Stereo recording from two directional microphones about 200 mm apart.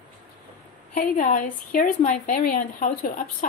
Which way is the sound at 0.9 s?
40° left (ahead or behind).